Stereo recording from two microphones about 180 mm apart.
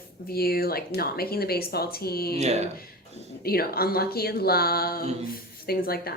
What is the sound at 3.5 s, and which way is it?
A woman's voice, 55° left (ahead or behind).